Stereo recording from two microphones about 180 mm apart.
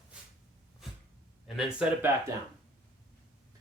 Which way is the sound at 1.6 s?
5° right (ahead or behind).